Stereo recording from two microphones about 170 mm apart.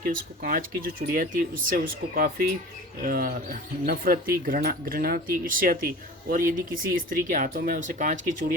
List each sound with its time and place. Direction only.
0.0 s speech: 55° right (ahead or behind)